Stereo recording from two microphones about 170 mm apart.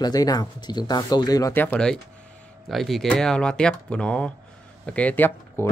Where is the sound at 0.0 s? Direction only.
20° left (ahead or behind).